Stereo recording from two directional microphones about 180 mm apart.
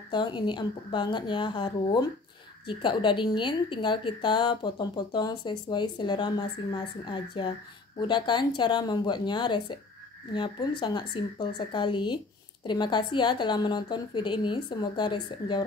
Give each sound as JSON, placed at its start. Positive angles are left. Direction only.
{"t": 0.1, "sound": "a woman's voice", "side_deg": 25}